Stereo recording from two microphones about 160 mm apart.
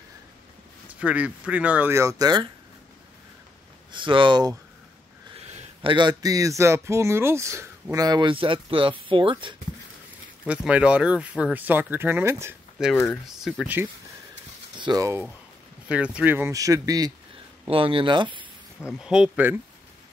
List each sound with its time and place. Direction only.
0.8 s speech: 10° right (ahead or behind); by 2.5 s 25° right (ahead or behind)
3.9 s speech: 30° right (ahead or behind)
5.4 s a sound: 45° right (ahead or behind)
5.9 s speech: 30° right (ahead or behind)
10.4 s speech: 5° right (ahead or behind)
12.8 s speech: 5° right (ahead or behind)
14.8 s speech: 25° right (ahead or behind)
15.9 s speech: 5° right (ahead or behind); by 17.1 s 25° right (ahead or behind)
17.6 s speech: 35° right (ahead or behind)
18.9 s speech: 5° right (ahead or behind)